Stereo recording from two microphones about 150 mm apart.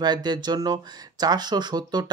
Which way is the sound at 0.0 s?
30° right (ahead or behind).